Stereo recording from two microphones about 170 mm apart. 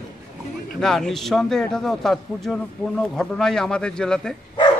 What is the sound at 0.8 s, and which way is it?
Speech, centre (ahead or behind).